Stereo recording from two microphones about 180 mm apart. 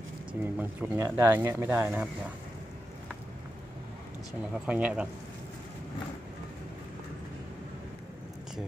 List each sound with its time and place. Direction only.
0.4 s speech: 10° right (ahead or behind)
4.6 s speech: 5° right (ahead or behind)